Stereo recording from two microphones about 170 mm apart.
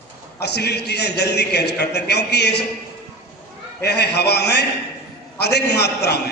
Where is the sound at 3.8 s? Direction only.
75° left (ahead or behind).